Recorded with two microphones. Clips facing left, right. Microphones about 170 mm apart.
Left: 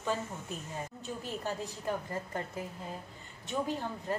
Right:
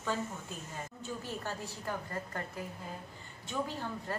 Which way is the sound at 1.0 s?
20° left (ahead or behind).